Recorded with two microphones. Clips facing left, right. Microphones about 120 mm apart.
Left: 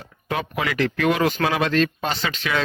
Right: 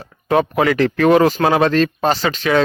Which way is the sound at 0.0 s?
40° right (ahead or behind).